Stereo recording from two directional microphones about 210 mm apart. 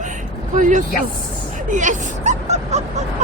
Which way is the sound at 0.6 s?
35° right (ahead or behind).